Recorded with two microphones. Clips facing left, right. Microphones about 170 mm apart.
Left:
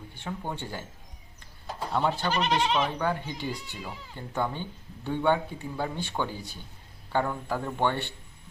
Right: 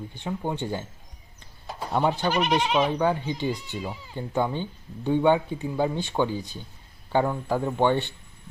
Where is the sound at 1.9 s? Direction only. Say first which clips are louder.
Right 4 dB; 15° right (ahead or behind).